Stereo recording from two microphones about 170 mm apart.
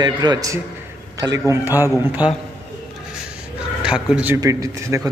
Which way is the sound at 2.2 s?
25° left (ahead or behind).